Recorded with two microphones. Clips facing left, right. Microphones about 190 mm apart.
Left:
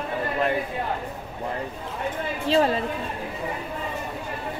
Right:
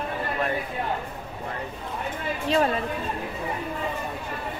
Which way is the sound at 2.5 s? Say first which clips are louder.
Left 2 dB; 30° left (ahead or behind).